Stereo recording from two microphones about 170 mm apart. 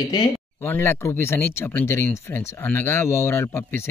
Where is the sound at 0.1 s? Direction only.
25° left (ahead or behind).